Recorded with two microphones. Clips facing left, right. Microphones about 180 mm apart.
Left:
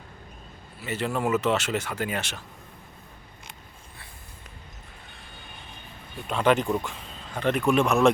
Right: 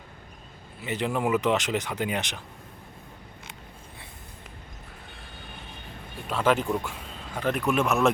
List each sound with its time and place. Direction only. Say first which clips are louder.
0.8 s speech: even; 15° right (ahead or behind)
6.2 s speech: left 2 dB; centre (ahead or behind)